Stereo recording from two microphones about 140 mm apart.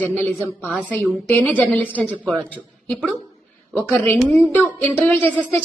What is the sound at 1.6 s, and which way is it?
Speech, 10° left (ahead or behind).